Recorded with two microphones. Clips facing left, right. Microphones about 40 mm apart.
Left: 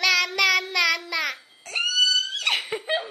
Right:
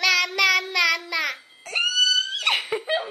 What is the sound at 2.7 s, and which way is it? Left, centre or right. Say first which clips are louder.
Speech: right 2 dB; centre.